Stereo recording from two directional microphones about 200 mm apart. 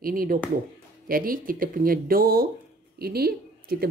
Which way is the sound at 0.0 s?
45° right (ahead or behind).